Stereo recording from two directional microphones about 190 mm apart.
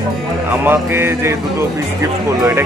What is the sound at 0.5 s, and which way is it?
Speech, 10° right (ahead or behind).